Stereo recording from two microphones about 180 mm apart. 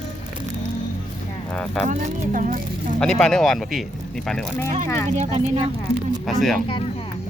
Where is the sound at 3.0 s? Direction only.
5° left (ahead or behind).